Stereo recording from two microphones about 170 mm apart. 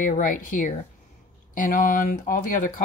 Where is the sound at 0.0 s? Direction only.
50° left (ahead or behind).